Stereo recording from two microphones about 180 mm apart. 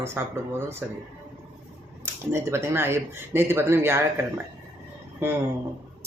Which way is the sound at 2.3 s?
15° right (ahead or behind).